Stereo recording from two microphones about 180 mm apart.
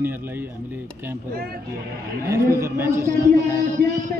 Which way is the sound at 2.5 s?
15° right (ahead or behind).